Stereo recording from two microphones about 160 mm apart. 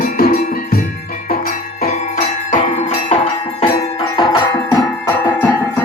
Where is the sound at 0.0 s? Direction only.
55° left (ahead or behind).